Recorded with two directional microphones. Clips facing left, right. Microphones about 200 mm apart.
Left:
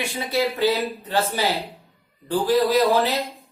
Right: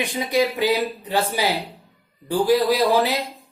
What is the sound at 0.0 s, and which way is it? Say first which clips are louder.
Speech: right 3 dB; 15° right (ahead or behind).